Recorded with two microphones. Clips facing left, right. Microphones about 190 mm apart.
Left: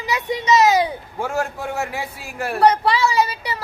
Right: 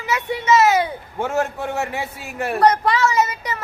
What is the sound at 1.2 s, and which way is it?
A woman's voice, centre (ahead or behind).